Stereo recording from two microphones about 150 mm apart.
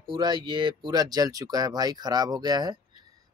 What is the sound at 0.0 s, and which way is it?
Speech, 30° right (ahead or behind).